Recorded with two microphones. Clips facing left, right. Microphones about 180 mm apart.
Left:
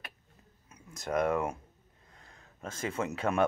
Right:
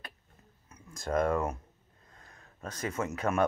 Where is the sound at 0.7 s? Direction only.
20° left (ahead or behind).